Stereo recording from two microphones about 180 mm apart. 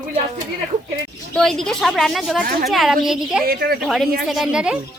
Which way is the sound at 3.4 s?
60° right (ahead or behind).